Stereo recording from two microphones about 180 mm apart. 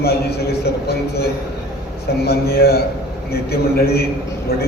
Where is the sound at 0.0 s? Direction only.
60° left (ahead or behind).